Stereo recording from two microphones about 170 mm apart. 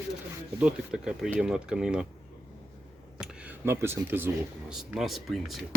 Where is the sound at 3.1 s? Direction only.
10° right (ahead or behind).